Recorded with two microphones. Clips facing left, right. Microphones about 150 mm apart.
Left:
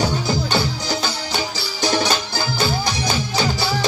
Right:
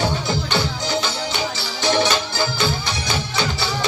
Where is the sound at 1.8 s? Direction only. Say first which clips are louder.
Right 1 dB; 40° left (ahead or behind).